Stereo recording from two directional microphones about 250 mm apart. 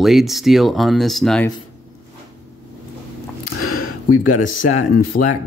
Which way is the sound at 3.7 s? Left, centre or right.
Left.